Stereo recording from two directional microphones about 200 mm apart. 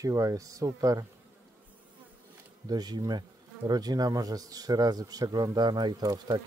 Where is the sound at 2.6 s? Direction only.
20° right (ahead or behind).